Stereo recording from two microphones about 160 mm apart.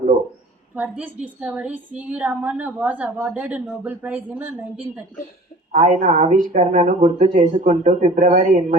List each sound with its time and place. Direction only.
0.8 s a woman's voice: 10° right (ahead or behind)
5.7 s speech: 55° right (ahead or behind)